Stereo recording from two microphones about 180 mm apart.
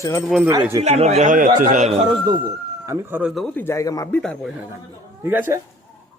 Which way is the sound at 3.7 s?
20° left (ahead or behind).